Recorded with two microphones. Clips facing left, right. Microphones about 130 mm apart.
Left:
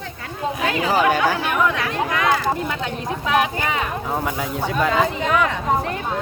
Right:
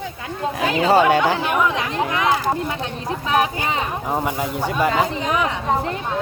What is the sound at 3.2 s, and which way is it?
Speech, 30° right (ahead or behind).